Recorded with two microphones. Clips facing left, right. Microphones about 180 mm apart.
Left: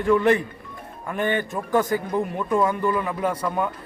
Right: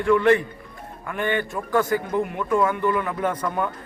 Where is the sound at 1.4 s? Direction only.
15° left (ahead or behind).